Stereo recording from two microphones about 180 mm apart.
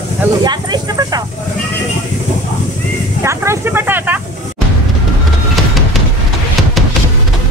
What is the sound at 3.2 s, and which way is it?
Vehicle, 15° right (ahead or behind).